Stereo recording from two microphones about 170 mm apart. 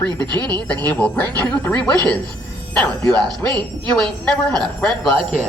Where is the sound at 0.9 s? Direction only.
10° left (ahead or behind).